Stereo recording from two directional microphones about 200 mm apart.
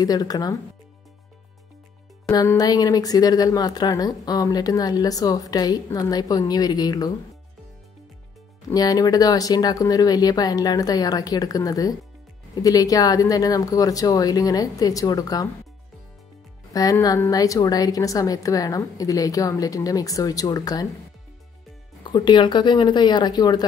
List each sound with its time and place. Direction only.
0.0 s speech: 20° left (ahead or behind)
2.3 s speech: 20° left (ahead or behind)
8.6 s a woman's voice: 20° left (ahead or behind)
16.7 s a woman's voice: 20° left (ahead or behind)
22.0 s speech: 20° left (ahead or behind)